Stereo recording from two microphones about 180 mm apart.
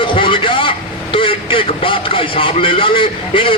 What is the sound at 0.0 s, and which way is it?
Vehicle, 30° left (ahead or behind).